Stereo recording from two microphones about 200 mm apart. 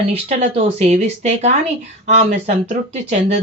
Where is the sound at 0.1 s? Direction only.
30° right (ahead or behind).